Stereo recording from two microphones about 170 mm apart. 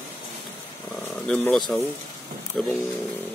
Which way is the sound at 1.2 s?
5° left (ahead or behind).